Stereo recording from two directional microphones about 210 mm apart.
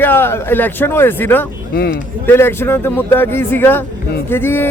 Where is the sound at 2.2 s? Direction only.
10° left (ahead or behind).